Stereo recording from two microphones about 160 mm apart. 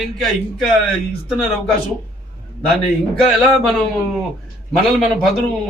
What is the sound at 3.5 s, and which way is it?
Speech, centre (ahead or behind).